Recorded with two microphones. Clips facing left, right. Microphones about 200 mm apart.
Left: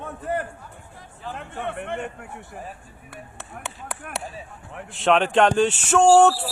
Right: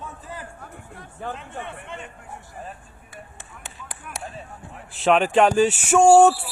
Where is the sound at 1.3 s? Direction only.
60° left (ahead or behind).